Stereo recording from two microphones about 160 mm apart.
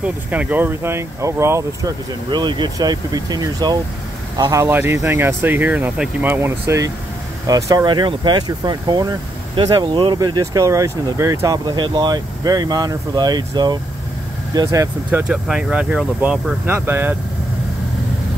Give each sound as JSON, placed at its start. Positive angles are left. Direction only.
{"t": 0.0, "sound": "speech", "side_deg": -10}
{"t": 15.0, "sound": "speech", "side_deg": -5}